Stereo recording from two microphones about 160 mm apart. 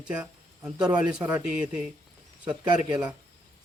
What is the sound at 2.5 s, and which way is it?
Speech, 25° right (ahead or behind).